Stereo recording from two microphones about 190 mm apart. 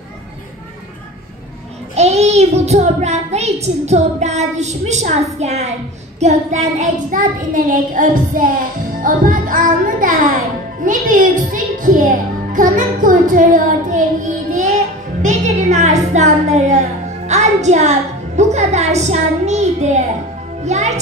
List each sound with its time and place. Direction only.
2.0 s a child's voice: 35° right (ahead or behind)
6.1 s child singing: 35° right (ahead or behind)
10.8 s a child's voice: 45° right (ahead or behind)
12.5 s child singing: 45° right (ahead or behind)
15.2 s a woman's voice: 40° right (ahead or behind)